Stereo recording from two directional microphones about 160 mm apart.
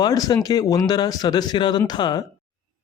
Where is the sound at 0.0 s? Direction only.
25° left (ahead or behind).